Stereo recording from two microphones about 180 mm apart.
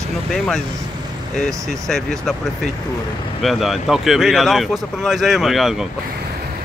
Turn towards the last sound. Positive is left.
turn(degrees=0)  # may be behind; listen again after turning